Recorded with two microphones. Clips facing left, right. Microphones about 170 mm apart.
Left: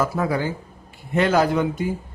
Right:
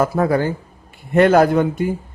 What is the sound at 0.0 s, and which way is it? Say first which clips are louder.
Speech: right 5 dB; 55° right (ahead or behind).